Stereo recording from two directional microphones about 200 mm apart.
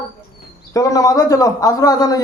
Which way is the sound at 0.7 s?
15° left (ahead or behind).